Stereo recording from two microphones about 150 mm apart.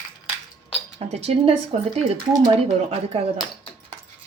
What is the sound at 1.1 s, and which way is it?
Speech, 45° right (ahead or behind).